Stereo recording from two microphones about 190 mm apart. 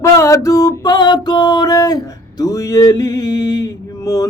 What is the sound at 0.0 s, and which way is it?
Music, 15° left (ahead or behind).